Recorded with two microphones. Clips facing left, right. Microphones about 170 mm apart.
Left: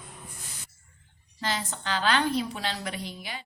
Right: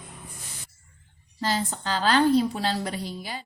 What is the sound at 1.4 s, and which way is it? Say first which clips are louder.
A woman's voice: right 5 dB; 35° right (ahead or behind).